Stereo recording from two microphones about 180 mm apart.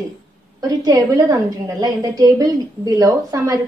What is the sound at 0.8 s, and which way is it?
A woman's voice, 20° right (ahead or behind).